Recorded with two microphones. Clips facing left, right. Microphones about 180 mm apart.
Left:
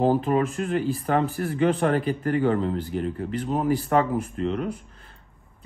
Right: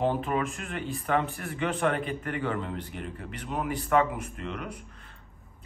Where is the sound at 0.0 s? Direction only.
35° left (ahead or behind).